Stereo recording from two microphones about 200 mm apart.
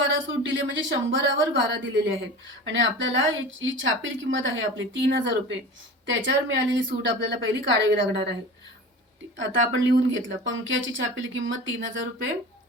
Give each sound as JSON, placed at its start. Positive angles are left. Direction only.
{"t": 0.1, "sound": "a woman's voice", "side_deg": -70}
{"t": 9.4, "sound": "speech", "side_deg": -70}